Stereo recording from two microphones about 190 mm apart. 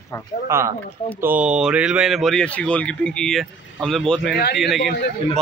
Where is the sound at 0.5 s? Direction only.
15° right (ahead or behind).